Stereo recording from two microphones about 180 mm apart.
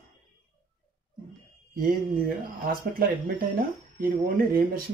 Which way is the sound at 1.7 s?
50° right (ahead or behind).